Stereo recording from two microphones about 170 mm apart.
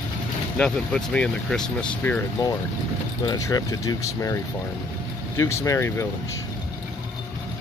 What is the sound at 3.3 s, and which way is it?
Speech, 20° left (ahead or behind).